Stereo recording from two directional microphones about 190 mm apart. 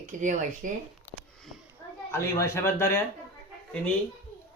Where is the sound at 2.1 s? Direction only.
15° left (ahead or behind).